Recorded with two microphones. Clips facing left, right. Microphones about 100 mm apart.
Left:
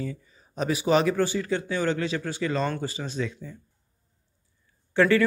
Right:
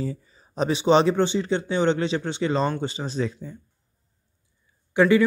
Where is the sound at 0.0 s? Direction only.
30° right (ahead or behind).